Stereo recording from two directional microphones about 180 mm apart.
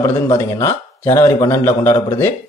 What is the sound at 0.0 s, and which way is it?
A man's voice, 15° left (ahead or behind).